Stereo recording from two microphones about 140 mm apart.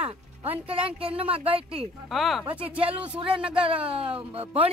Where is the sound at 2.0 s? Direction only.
Centre (ahead or behind).